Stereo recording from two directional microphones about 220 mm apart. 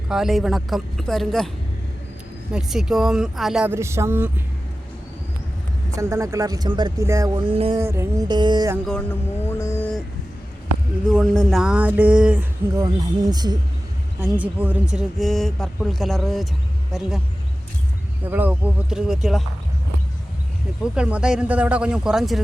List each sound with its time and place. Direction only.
0.1 s speech: centre (ahead or behind)
2.5 s speech: centre (ahead or behind)
5.9 s speech: 15° right (ahead or behind)
7.8 s speech: 10° right (ahead or behind)
8.9 s music: 5° left (ahead or behind)
11.1 s speech: centre (ahead or behind); by 13.6 s 20° right (ahead or behind)
14.2 s speech: 5° right (ahead or behind)
18.3 s speech: 5° right (ahead or behind)
20.9 s speech: 5° right (ahead or behind)